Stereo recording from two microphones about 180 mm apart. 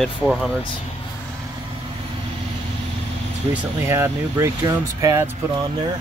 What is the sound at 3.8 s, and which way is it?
Speech, 15° right (ahead or behind).